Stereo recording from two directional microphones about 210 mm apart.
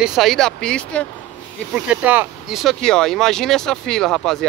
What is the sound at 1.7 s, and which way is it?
Speech, 5° right (ahead or behind).